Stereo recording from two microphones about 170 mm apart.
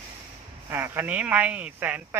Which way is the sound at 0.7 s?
15° right (ahead or behind).